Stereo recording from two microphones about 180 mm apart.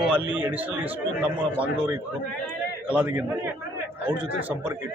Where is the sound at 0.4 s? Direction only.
10° right (ahead or behind).